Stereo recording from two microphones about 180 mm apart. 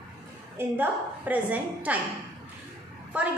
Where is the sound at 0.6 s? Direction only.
10° right (ahead or behind).